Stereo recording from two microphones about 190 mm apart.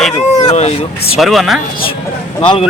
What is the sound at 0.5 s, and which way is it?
Speech, 30° left (ahead or behind).